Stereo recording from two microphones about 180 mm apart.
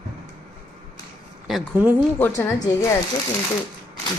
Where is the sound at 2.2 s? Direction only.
15° left (ahead or behind).